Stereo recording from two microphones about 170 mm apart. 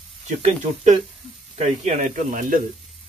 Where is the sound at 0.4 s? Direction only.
40° right (ahead or behind).